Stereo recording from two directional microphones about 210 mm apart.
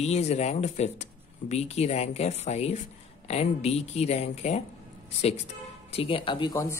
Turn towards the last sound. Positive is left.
turn(degrees=20)  # may be behind; listen again after turning